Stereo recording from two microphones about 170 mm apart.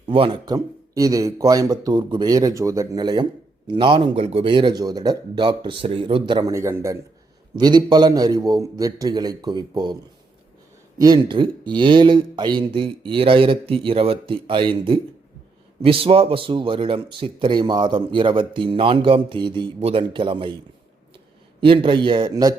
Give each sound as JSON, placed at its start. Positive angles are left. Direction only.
{"t": 0.1, "sound": "a man's voice", "side_deg": -30}
{"t": 21.6, "sound": "a man's voice", "side_deg": -30}